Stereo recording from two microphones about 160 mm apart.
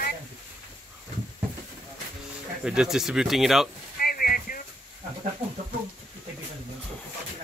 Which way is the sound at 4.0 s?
65° left (ahead or behind).